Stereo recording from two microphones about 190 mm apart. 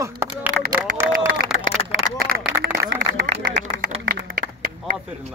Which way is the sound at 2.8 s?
65° right (ahead or behind).